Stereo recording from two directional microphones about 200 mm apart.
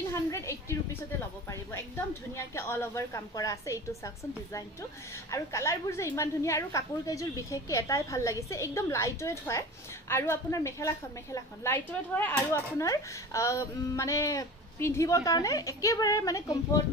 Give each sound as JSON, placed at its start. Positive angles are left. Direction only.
{"t": 0.3, "sound": "a sound", "side_deg": 15}
{"t": 2.3, "sound": "a woman's voice", "side_deg": 10}
{"t": 5.3, "sound": "a woman's voice", "side_deg": 15}